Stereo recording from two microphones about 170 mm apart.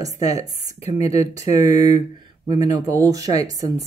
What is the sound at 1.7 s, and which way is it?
Speech, 40° left (ahead or behind).